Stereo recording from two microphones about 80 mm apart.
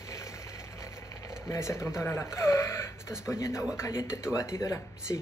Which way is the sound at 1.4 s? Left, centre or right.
Left.